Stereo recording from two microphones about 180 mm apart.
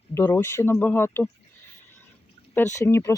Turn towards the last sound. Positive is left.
turn(degrees=15)  # may be behind; listen again after turning